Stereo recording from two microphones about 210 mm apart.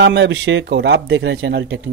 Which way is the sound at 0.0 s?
55° right (ahead or behind).